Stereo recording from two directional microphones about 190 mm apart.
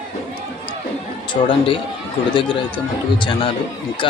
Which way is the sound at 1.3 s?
25° left (ahead or behind).